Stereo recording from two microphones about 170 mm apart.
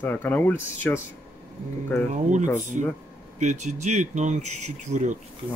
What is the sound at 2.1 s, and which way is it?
Speech, 45° right (ahead or behind).